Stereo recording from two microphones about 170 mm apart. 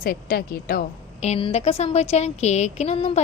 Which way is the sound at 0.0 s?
60° left (ahead or behind).